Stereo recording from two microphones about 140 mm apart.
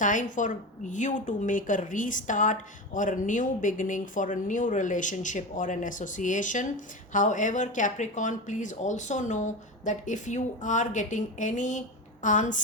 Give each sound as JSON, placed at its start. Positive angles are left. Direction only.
{"t": 0.0, "sound": "a woman's voice", "side_deg": 65}